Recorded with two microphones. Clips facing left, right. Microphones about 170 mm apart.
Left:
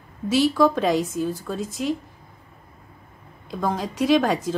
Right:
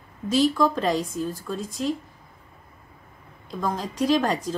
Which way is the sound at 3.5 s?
5° left (ahead or behind).